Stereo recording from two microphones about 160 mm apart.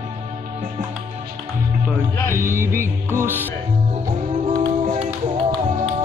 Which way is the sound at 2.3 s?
15° right (ahead or behind).